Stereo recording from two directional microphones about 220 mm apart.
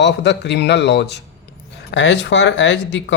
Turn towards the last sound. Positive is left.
turn(degrees=55)  # may be behind; listen again after turning